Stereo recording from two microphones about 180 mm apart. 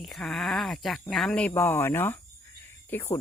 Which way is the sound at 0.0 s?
Centre (ahead or behind).